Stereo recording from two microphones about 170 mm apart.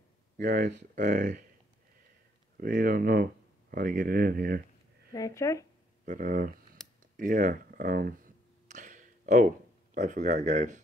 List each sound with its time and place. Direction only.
0.9 s speech: 45° right (ahead or behind)
2.5 s speech: 55° right (ahead or behind)
5.1 s speech: 20° left (ahead or behind)
6.0 s speech: 50° right (ahead or behind)
7.2 s a sound: 50° right (ahead or behind)
9.9 s speech: 45° right (ahead or behind)